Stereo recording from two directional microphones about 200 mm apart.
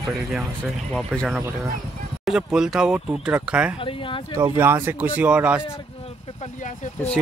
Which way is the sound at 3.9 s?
25° left (ahead or behind).